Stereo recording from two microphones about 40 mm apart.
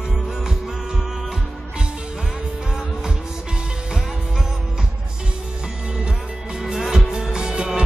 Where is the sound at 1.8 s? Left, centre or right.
Right.